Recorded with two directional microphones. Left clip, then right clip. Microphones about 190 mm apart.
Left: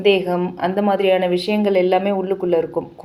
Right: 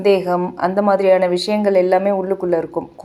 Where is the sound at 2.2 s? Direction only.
15° right (ahead or behind).